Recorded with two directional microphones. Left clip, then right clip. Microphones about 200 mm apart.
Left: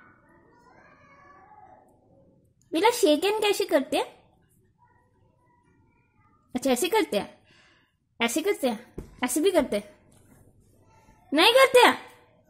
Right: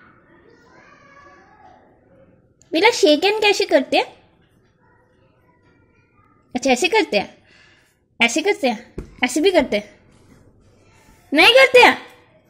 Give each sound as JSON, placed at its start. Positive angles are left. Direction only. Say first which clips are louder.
{"t": 2.7, "sound": "a woman's voice", "louder": "right 7 dB", "side_deg": 5}
{"t": 6.5, "sound": "a woman's voice", "louder": "right 7 dB", "side_deg": 10}
{"t": 11.3, "sound": "a woman's voice", "louder": "right 7 dB", "side_deg": 5}